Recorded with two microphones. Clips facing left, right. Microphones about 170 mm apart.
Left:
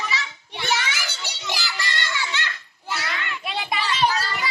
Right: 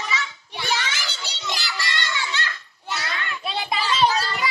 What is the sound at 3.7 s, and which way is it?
Children playing, 30° right (ahead or behind).